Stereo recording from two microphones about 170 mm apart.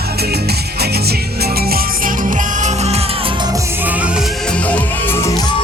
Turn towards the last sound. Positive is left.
turn(degrees=15)  # may be behind; listen again after turning